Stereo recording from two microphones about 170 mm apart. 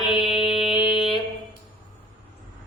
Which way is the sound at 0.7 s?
30° left (ahead or behind).